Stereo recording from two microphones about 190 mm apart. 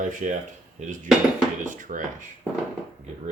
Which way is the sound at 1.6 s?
45° right (ahead or behind).